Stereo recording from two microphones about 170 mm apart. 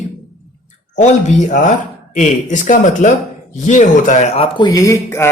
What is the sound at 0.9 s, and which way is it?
A man's voice, 45° left (ahead or behind).